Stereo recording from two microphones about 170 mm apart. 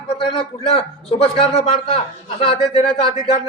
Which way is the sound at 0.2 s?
30° left (ahead or behind).